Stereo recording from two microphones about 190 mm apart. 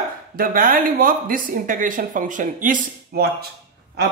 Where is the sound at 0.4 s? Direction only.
50° right (ahead or behind).